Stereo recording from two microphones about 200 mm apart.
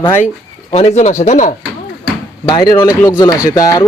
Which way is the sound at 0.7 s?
35° left (ahead or behind).